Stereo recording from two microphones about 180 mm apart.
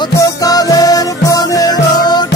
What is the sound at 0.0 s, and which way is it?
Music, 20° left (ahead or behind).